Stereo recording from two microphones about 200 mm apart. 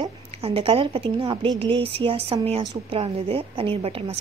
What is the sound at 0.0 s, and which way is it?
A woman's voice, 30° right (ahead or behind).